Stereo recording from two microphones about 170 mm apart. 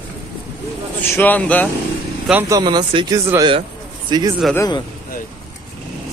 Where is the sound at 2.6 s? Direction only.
25° right (ahead or behind).